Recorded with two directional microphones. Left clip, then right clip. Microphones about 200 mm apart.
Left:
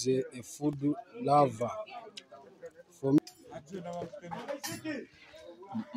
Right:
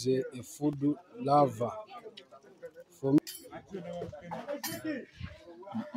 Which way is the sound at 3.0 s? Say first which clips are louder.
Even; centre (ahead or behind).